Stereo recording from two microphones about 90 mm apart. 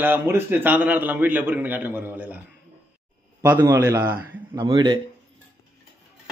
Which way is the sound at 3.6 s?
30° right (ahead or behind).